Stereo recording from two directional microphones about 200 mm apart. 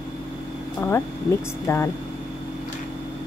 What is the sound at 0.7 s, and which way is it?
Speech, 10° left (ahead or behind).